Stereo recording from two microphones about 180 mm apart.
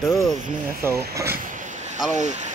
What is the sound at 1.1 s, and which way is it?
Speech, 15° right (ahead or behind).